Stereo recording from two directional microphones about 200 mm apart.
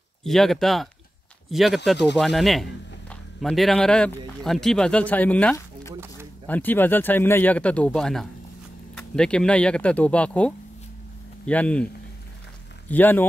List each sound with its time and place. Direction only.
0.2 s speech: centre (ahead or behind)